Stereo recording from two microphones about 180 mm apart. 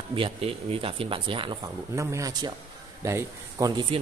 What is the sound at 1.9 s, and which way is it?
A man's voice, 15° right (ahead or behind).